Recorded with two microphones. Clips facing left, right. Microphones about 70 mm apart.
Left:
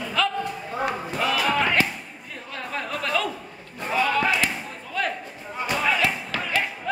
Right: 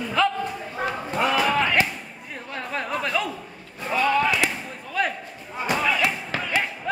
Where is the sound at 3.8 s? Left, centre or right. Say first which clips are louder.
Right 1 dB; centre.